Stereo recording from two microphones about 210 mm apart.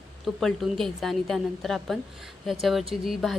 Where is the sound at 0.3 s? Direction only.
Centre (ahead or behind).